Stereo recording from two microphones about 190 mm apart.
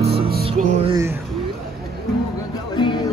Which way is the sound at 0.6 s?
35° right (ahead or behind).